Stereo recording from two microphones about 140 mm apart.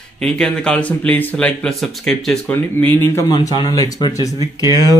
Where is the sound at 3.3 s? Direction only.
30° left (ahead or behind).